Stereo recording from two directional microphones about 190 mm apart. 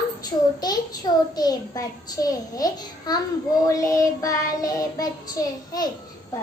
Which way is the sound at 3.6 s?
15° left (ahead or behind).